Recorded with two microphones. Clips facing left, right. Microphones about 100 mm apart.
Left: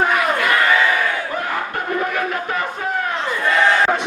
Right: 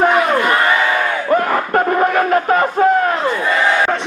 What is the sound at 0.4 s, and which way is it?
Crowd, 30° right (ahead or behind).